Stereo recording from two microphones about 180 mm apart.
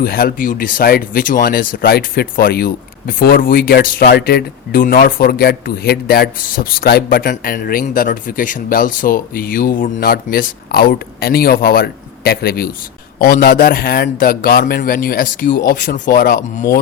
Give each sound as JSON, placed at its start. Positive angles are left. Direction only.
{"t": 0.0, "sound": "speech", "side_deg": 55}